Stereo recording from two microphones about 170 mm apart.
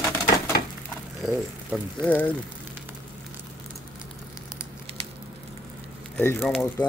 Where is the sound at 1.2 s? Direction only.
Centre (ahead or behind).